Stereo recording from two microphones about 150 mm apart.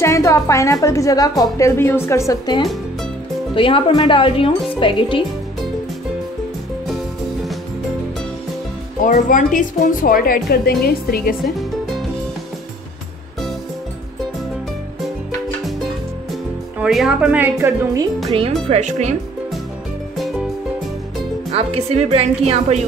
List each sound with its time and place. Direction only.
0.0 s a woman's voice: 20° left (ahead or behind)
3.5 s speech: 35° left (ahead or behind)
9.0 s a woman's voice: 60° left (ahead or behind); by 11.3 s 85° left
11.4 s music: centre (ahead or behind)
16.7 s a woman's voice: 5° right (ahead or behind)
18.7 s a woman's voice: 50° right (ahead or behind)
21.5 s a woman's voice: 45° right (ahead or behind)